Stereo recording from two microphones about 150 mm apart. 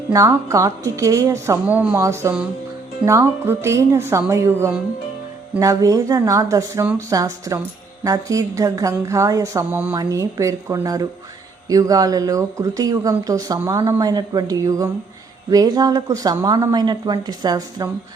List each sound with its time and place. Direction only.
0.1 s speech: 20° right (ahead or behind)